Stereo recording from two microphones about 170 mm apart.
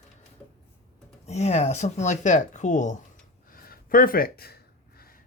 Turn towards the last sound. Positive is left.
turn(degrees=65)  # may be behind; listen again after turning